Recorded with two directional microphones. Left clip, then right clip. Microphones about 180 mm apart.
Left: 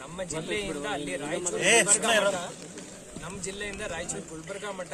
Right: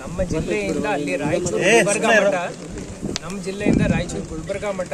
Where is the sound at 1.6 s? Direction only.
30° right (ahead or behind).